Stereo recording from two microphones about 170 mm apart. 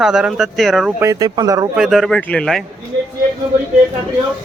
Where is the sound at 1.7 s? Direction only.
Centre (ahead or behind).